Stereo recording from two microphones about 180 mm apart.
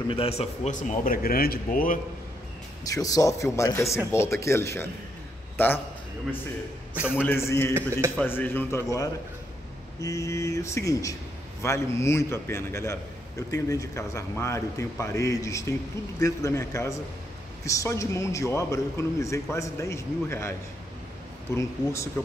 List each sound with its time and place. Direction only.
0.1 s speech: 35° left (ahead or behind); by 2.0 s 50° left (ahead or behind)
2.8 s a man's voice: 20° left (ahead or behind)
7.2 s a man's voice: 15° left (ahead or behind)
21.5 s a man's voice: 15° left (ahead or behind)